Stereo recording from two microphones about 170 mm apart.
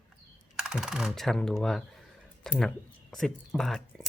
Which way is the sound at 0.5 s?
5° right (ahead or behind).